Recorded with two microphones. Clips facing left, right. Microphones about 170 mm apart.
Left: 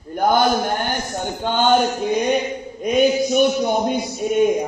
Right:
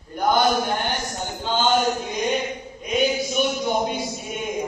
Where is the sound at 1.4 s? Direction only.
55° left (ahead or behind).